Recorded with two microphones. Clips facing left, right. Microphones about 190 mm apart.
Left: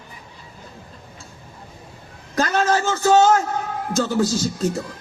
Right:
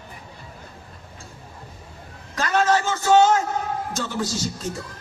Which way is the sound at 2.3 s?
40° left (ahead or behind).